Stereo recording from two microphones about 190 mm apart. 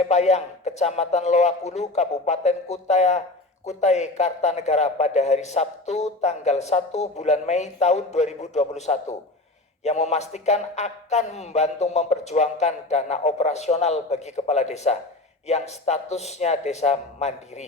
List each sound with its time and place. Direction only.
0.0 s a man's voice: 35° left (ahead or behind)